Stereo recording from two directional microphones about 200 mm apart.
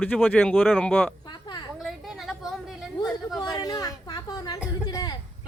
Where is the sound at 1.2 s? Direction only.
20° left (ahead or behind).